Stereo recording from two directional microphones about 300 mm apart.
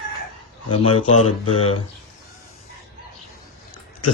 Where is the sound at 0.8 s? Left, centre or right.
Left.